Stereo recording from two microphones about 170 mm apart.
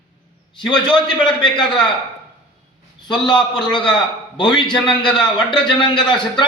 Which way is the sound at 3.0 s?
25° left (ahead or behind).